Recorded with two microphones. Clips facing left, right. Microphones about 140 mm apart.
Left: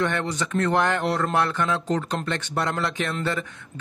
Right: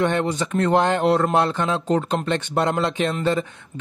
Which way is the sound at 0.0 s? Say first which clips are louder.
Right 4 dB; 15° right (ahead or behind).